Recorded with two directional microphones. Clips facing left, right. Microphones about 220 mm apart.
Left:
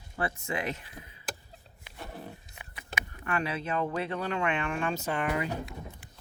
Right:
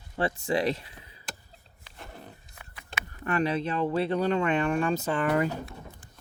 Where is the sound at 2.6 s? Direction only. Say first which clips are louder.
Left 1 dB; 15° left (ahead or behind).